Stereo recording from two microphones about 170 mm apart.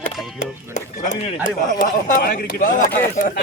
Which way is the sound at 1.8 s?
50° left (ahead or behind).